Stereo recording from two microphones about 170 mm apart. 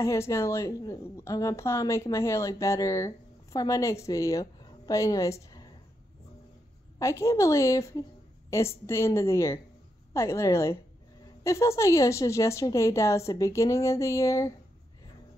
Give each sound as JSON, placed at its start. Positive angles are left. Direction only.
{"t": 0.0, "sound": "a woman's voice", "side_deg": 15}
{"t": 7.0, "sound": "a woman's voice", "side_deg": 15}